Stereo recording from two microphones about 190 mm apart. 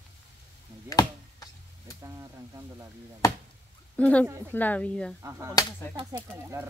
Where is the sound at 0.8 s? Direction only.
20° left (ahead or behind).